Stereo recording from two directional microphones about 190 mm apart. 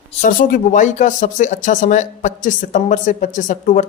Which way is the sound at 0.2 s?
45° left (ahead or behind).